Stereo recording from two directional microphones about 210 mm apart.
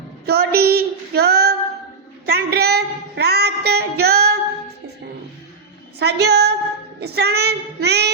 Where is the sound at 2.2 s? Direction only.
50° right (ahead or behind).